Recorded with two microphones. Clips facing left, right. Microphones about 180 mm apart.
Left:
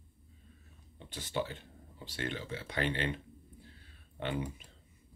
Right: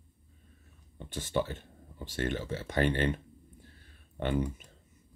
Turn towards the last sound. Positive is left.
turn(degrees=-45)  # may be behind; listen again after turning